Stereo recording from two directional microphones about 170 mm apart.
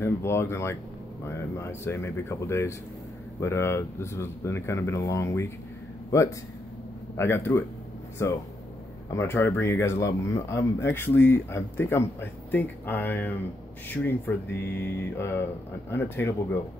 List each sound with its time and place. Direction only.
0.0 s speech: 15° left (ahead or behind)
7.2 s speech: 15° left (ahead or behind)